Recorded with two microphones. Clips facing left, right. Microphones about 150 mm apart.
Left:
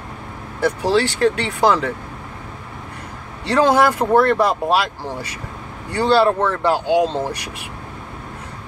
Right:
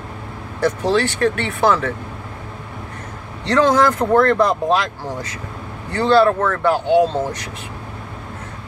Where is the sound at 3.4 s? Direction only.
10° left (ahead or behind).